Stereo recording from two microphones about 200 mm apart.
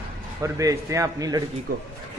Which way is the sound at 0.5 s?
15° right (ahead or behind).